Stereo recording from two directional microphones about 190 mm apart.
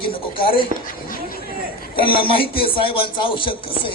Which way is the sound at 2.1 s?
25° left (ahead or behind).